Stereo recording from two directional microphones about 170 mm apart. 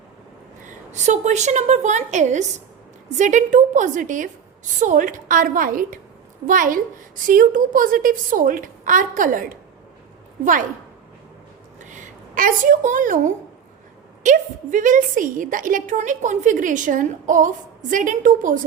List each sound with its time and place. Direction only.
0.6 s a woman's voice: 45° right (ahead or behind)
11.8 s a woman's voice: 45° right (ahead or behind)